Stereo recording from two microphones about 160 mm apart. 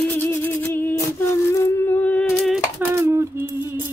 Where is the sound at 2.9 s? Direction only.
20° right (ahead or behind).